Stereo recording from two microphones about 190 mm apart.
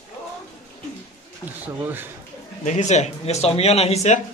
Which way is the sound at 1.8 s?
10° right (ahead or behind).